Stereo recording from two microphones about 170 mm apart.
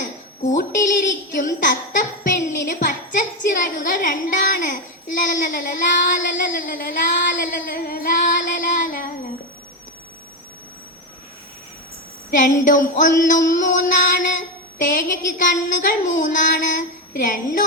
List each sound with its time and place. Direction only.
0.0 s a woman's voice: 50° left (ahead or behind)
12.3 s music: 50° left (ahead or behind)